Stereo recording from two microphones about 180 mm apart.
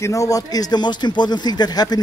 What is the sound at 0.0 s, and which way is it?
Speech, 15° left (ahead or behind).